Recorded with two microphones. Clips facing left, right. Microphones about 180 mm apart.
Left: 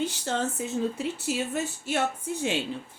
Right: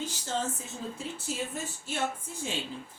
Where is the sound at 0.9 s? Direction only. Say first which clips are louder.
Left 6 dB; 70° left (ahead or behind).